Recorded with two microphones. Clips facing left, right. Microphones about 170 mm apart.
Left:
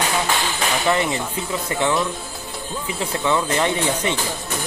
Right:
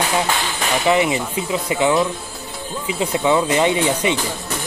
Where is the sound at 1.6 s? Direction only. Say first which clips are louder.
Right 4 dB; 10° right (ahead or behind).